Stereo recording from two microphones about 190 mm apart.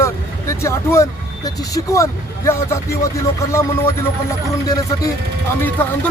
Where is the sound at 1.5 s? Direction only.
15° left (ahead or behind).